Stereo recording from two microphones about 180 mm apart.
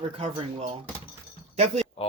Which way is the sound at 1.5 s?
35° right (ahead or behind).